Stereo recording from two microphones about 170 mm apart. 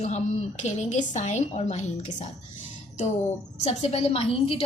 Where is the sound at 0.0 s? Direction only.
45° left (ahead or behind).